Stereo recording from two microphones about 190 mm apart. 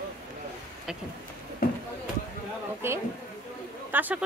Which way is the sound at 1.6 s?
55° left (ahead or behind).